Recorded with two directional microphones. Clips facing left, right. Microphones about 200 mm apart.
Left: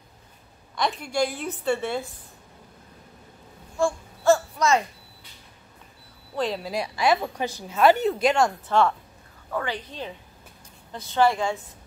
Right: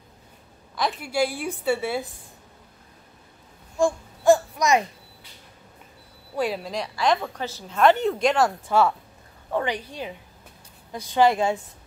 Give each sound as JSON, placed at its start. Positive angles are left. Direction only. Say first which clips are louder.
{"t": 0.7, "sound": "a woman's voice", "louder": "right 1 dB", "side_deg": -5}
{"t": 3.7, "sound": "babbling", "louder": "right 2 dB", "side_deg": -15}
{"t": 6.3, "sound": "a woman's voice", "louder": "right 1 dB", "side_deg": -10}
{"t": 6.6, "sound": "a woman's voice", "louder": "left 1 dB", "side_deg": 10}
{"t": 9.5, "sound": "a woman's voice", "louder": "right 3 dB", "side_deg": -25}
{"t": 9.8, "sound": "a woman's voice", "louder": "right 1 dB", "side_deg": -10}